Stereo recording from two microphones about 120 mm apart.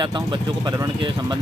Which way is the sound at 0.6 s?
30° right (ahead or behind).